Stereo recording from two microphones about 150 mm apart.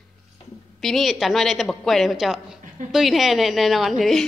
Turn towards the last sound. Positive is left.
turn(degrees=0)  # may be behind; listen again after turning